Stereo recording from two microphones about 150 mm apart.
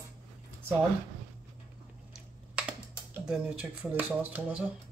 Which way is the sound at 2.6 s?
10° right (ahead or behind).